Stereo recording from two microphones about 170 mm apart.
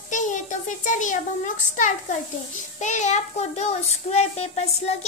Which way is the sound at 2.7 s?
45° left (ahead or behind).